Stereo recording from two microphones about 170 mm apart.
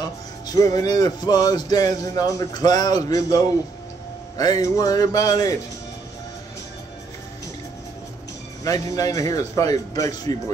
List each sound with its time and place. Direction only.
0.5 s music: 20° left (ahead or behind)
8.6 s music: 20° left (ahead or behind)